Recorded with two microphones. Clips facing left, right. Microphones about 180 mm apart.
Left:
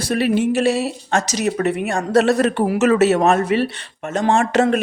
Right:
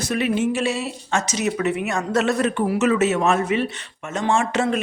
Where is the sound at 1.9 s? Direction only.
35° left (ahead or behind).